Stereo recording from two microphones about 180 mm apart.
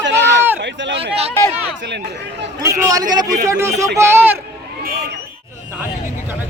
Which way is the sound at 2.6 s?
20° right (ahead or behind).